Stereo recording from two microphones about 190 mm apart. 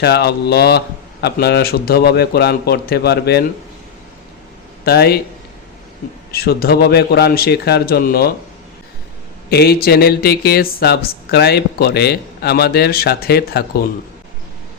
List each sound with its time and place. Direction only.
0.0 s speech: 60° left (ahead or behind)
4.9 s speech: 55° left (ahead or behind)
6.3 s speech: 55° left (ahead or behind)
9.5 s speech: 55° left (ahead or behind)